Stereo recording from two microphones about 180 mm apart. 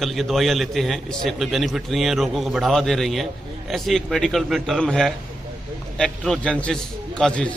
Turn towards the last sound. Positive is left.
turn(degrees=5)  # may be behind; listen again after turning